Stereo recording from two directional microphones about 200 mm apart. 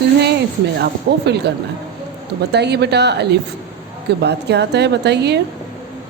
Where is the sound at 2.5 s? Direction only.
55° right (ahead or behind).